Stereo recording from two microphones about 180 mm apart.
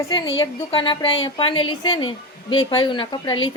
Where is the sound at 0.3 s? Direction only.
25° left (ahead or behind).